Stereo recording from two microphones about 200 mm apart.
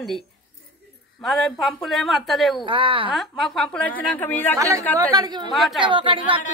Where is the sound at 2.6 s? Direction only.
25° right (ahead or behind).